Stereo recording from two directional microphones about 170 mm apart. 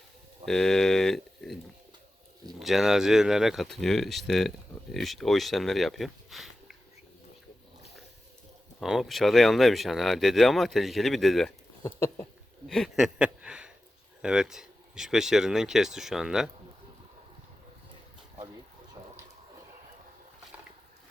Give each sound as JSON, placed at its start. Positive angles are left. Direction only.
{"t": 0.4, "sound": "speech", "side_deg": 5}
{"t": 2.6, "sound": "speech", "side_deg": 0}
{"t": 8.8, "sound": "speech", "side_deg": 0}
{"t": 11.8, "sound": "a sound", "side_deg": 15}
{"t": 12.6, "sound": "speech", "side_deg": 0}
{"t": 19.0, "sound": "a sound", "side_deg": -25}